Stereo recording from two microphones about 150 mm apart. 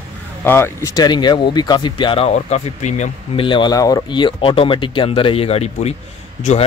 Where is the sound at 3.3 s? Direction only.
35° left (ahead or behind).